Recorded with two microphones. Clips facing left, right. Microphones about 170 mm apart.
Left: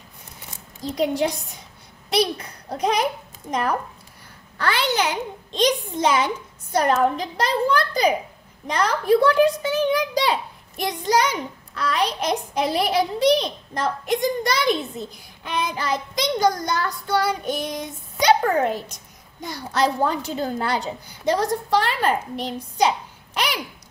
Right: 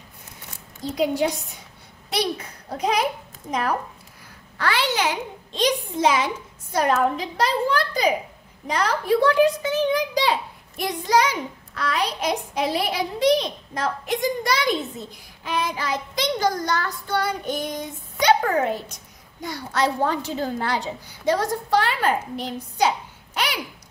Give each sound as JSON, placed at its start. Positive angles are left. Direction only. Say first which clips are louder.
{"t": 0.8, "sound": "a child's voice", "louder": "even", "side_deg": -5}